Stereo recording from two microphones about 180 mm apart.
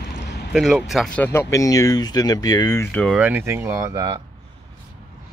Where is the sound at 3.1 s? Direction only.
10° right (ahead or behind).